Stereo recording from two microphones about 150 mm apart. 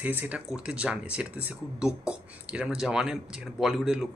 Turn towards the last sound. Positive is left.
turn(degrees=0)  # may be behind; listen again after turning